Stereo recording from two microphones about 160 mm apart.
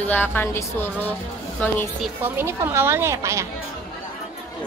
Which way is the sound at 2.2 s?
15° right (ahead or behind).